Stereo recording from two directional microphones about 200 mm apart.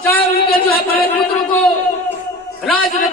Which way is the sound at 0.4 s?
50° left (ahead or behind).